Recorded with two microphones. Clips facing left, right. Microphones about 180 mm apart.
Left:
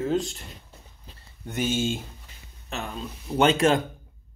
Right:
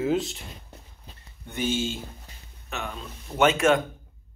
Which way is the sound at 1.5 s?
50° left (ahead or behind).